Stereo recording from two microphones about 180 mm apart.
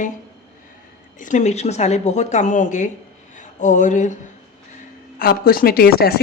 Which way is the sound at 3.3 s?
45° left (ahead or behind).